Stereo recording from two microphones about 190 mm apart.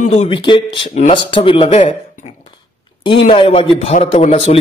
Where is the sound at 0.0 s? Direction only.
35° left (ahead or behind).